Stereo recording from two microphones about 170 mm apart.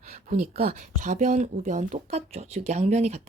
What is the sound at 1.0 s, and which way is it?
Speech, 50° right (ahead or behind).